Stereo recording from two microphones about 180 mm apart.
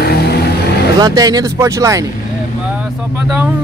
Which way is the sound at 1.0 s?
20° right (ahead or behind).